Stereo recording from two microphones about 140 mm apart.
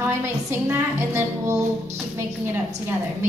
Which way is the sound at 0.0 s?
15° right (ahead or behind).